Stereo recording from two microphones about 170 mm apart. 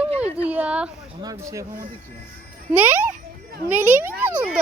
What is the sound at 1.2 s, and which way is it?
Speech, 20° right (ahead or behind).